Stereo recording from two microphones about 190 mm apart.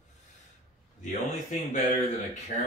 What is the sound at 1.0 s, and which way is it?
Speech, 40° left (ahead or behind).